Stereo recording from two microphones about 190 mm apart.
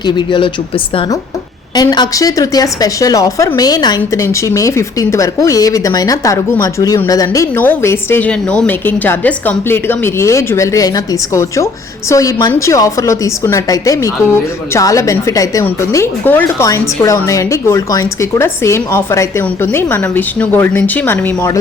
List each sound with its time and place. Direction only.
0.0 s speech: 25° left (ahead or behind)
1.7 s a woman's voice: 20° left (ahead or behind)